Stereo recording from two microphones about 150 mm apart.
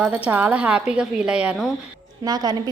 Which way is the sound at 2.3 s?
25° right (ahead or behind).